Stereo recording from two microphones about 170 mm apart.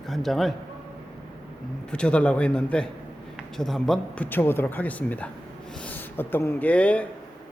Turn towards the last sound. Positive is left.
turn(degrees=5)  # may be behind; listen again after turning